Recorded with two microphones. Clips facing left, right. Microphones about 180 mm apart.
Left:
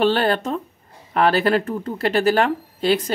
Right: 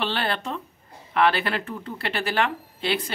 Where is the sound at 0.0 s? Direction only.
40° left (ahead or behind).